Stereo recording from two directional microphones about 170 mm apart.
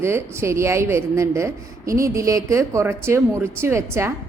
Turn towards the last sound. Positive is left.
turn(degrees=-15)  # may be behind; listen again after turning